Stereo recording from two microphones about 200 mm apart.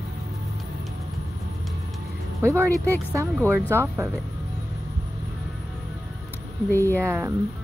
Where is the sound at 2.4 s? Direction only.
15° right (ahead or behind).